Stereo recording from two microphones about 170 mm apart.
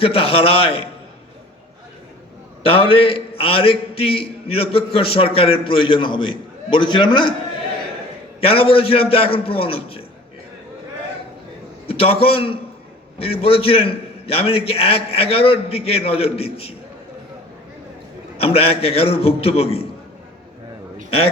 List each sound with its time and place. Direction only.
0.0 s a man's voice: 35° left (ahead or behind)
2.6 s a man's voice: 35° left (ahead or behind)
8.4 s a man's voice: 35° left (ahead or behind)
11.9 s a man's voice: 35° left (ahead or behind)
18.3 s a man's voice: 35° left (ahead or behind)